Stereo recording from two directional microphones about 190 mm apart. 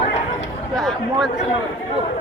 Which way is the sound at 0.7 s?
Centre (ahead or behind).